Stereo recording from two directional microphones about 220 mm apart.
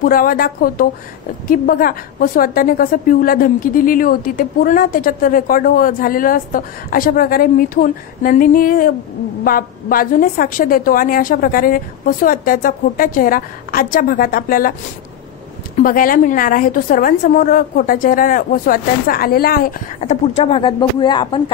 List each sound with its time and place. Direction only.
0.0 s a woman's voice: 40° left (ahead or behind)
15.8 s a woman's voice: 40° left (ahead or behind)
20.3 s speech: 25° left (ahead or behind)